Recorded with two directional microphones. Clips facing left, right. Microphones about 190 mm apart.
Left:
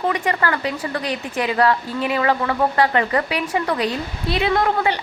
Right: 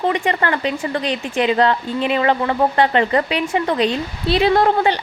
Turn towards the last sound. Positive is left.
turn(degrees=-30)  # may be behind; listen again after turning